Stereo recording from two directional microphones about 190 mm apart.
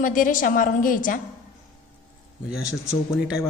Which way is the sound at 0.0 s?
45° left (ahead or behind).